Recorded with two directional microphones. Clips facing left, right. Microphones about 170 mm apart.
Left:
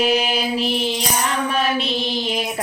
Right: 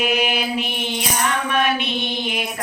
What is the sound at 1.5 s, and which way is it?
Music, 35° left (ahead or behind).